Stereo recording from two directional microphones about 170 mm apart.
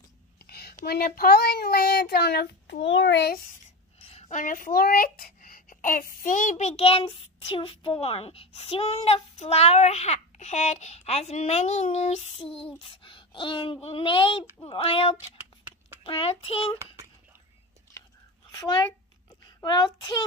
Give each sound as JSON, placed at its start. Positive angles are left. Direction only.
{"t": 0.5, "sound": "child singing", "side_deg": 70}
{"t": 4.0, "sound": "a child's voice", "side_deg": 40}
{"t": 12.6, "sound": "a child's voice", "side_deg": 30}
{"t": 16.7, "sound": "a child's voice", "side_deg": -20}
{"t": 18.5, "sound": "a sound", "side_deg": 25}
{"t": 19.4, "sound": "a child's voice", "side_deg": 25}